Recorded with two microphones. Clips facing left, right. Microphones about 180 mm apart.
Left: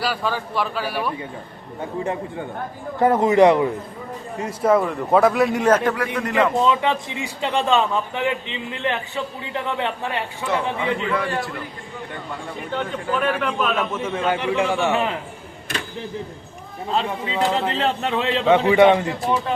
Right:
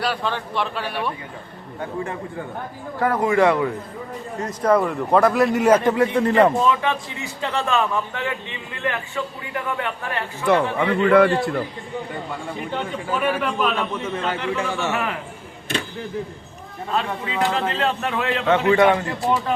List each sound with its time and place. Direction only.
0.0 s a man's voice: 5° left (ahead or behind)
3.0 s a man's voice: 20° left (ahead or behind)
4.4 s a man's voice: 5° left (ahead or behind)
5.7 s speech: 20° right (ahead or behind)
6.6 s a man's voice: 20° left (ahead or behind)
10.4 s a man's voice: 60° right (ahead or behind)
13.1 s a man's voice: 5° right (ahead or behind); by 15.2 s 20° left (ahead or behind)
16.9 s a man's voice: 25° left (ahead or behind)
18.4 s a man's voice: 15° left (ahead or behind)